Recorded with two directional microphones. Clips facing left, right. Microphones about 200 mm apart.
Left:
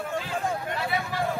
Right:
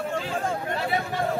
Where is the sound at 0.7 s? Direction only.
35° right (ahead or behind).